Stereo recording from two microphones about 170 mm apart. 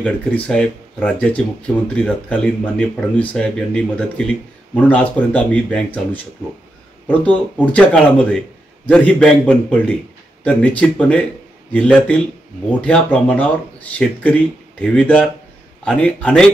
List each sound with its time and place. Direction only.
0.0 s a man's voice: 5° left (ahead or behind)